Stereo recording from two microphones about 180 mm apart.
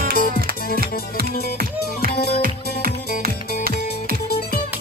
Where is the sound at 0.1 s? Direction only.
50° left (ahead or behind).